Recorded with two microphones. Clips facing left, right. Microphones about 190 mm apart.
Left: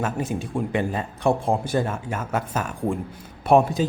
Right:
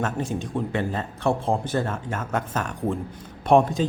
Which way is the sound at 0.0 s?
5° left (ahead or behind).